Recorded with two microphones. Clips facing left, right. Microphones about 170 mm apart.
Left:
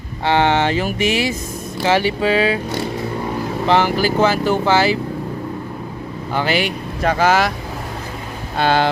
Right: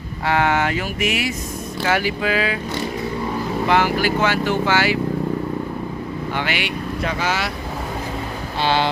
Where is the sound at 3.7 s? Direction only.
30° left (ahead or behind).